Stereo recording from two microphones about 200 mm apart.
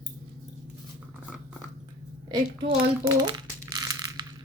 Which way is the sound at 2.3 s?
25° right (ahead or behind).